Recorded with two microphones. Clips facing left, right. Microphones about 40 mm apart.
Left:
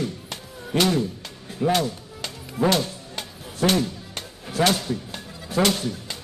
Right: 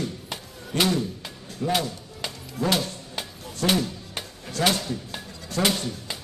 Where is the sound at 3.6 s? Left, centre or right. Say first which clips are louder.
Left 2 dB; centre.